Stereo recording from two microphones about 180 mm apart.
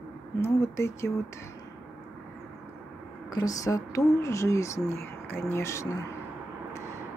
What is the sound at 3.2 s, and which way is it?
Speech, 20° left (ahead or behind).